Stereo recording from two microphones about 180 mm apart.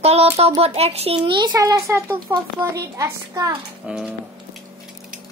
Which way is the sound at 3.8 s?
5° right (ahead or behind).